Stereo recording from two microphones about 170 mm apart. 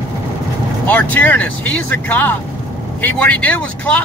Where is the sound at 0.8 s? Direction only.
10° left (ahead or behind).